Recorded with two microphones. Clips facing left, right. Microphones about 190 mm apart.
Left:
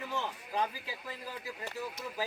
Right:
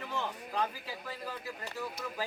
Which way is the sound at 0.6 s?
15° left (ahead or behind).